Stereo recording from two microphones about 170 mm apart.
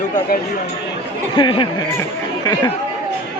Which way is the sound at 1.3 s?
30° left (ahead or behind).